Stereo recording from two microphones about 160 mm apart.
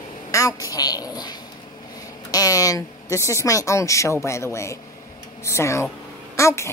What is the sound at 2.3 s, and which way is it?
Speech, 20° left (ahead or behind).